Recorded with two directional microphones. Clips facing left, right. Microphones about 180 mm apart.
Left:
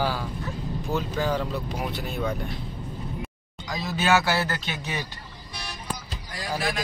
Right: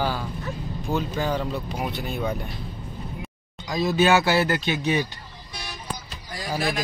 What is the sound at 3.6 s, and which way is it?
Speech, 15° right (ahead or behind).